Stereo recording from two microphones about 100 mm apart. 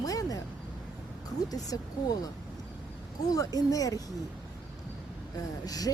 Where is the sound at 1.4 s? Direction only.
40° left (ahead or behind).